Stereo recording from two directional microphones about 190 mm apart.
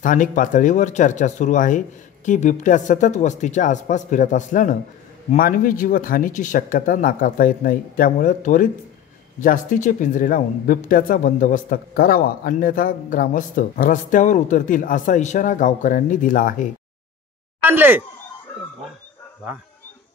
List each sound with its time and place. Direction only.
0.0 s speech: 45° left (ahead or behind)
17.6 s speech: 10° right (ahead or behind)